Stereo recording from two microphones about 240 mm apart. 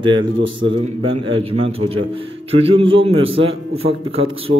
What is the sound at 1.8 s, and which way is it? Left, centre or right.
A man's voice, right.